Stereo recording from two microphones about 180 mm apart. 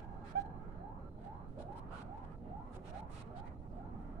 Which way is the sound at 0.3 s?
60° right (ahead or behind).